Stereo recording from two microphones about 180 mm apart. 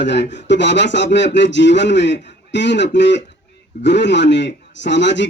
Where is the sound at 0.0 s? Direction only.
80° left.